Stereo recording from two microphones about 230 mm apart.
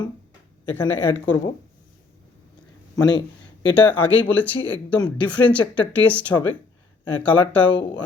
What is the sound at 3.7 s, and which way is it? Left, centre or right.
Speech, centre.